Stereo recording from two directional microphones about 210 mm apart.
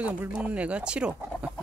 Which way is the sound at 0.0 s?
5° right (ahead or behind).